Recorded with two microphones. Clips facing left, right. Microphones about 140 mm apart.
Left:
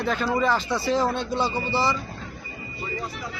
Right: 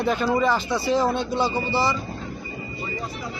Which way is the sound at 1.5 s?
30° right (ahead or behind).